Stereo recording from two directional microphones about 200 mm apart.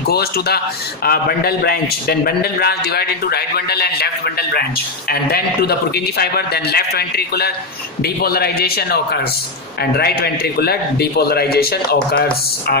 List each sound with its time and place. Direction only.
0.0 s a man's voice: 50° left (ahead or behind)